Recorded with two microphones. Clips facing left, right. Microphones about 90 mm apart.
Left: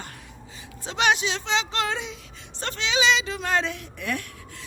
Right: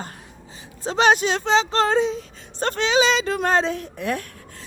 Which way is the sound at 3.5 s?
35° right (ahead or behind).